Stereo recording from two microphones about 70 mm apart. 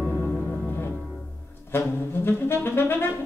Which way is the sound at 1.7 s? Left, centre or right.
Left.